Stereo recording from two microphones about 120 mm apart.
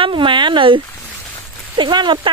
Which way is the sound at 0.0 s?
45° right (ahead or behind).